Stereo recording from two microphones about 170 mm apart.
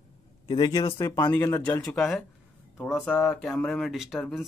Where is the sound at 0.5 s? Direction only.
25° left (ahead or behind).